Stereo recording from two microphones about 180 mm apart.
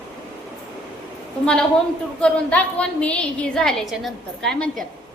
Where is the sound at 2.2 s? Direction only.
5° left (ahead or behind).